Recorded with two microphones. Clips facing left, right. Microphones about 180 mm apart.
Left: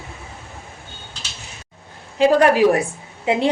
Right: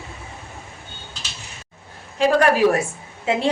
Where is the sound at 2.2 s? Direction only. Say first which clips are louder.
Left 2 dB; 25° left (ahead or behind).